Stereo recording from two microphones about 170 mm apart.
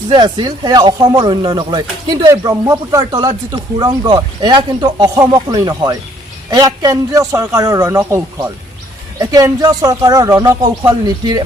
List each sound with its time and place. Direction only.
0.1 s speech: 30° right (ahead or behind)